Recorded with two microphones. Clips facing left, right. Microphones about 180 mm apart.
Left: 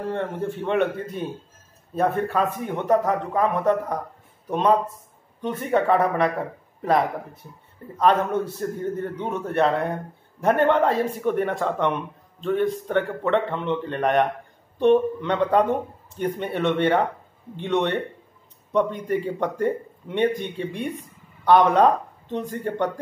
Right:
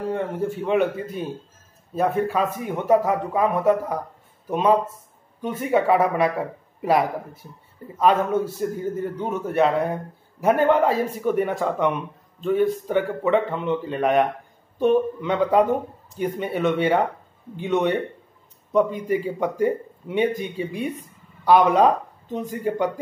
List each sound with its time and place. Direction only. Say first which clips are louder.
0.1 s speech: right 2 dB; 5° right (ahead or behind)